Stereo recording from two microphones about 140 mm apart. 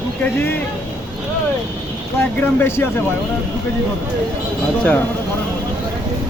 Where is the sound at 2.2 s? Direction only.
15° left (ahead or behind).